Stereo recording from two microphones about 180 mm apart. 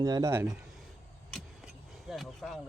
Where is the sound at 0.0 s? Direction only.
20° right (ahead or behind).